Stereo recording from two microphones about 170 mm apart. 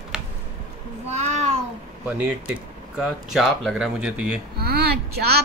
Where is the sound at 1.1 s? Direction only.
40° right (ahead or behind).